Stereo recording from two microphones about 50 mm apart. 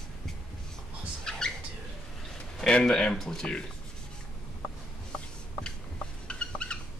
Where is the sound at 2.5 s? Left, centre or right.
Centre.